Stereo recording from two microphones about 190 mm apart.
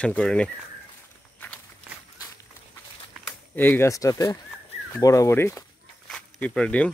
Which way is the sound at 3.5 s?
10° left (ahead or behind).